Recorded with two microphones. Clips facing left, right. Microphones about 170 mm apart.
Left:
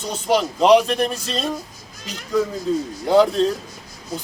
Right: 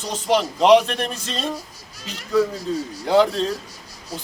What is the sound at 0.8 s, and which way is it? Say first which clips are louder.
Speech: left 5 dB; 35° left (ahead or behind).